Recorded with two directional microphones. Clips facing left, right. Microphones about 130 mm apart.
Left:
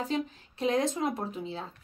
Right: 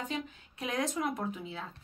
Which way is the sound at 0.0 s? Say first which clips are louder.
Left 6 dB; 30° left (ahead or behind).